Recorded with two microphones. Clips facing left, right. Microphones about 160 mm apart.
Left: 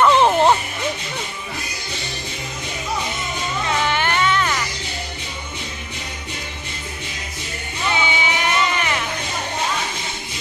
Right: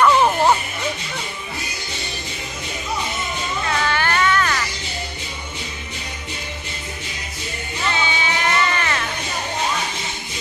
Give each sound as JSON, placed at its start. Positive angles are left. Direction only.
{"t": 0.0, "sound": "music", "side_deg": 25}
{"t": 3.8, "sound": "music", "side_deg": 20}
{"t": 7.9, "sound": "music", "side_deg": 15}